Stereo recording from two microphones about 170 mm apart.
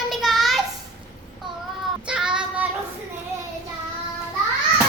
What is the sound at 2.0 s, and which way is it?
Child singing, 5° right (ahead or behind).